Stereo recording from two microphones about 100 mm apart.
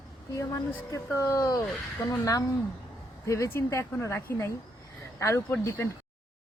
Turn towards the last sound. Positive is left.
turn(degrees=30)  # may be behind; listen again after turning